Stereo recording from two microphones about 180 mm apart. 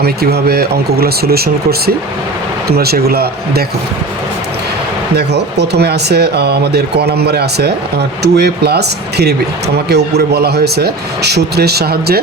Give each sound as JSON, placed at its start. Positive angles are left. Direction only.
{"t": 0.0, "sound": "speech", "side_deg": -60}
{"t": 2.6, "sound": "speech", "side_deg": -60}
{"t": 5.1, "sound": "speech", "side_deg": -65}